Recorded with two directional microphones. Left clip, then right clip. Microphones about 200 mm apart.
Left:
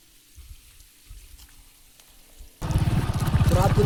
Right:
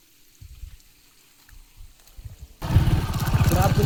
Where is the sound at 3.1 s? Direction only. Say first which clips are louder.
Even; 55° right (ahead or behind).